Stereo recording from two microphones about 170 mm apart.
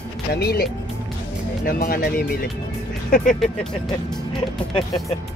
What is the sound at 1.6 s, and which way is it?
Speech, 60° left (ahead or behind).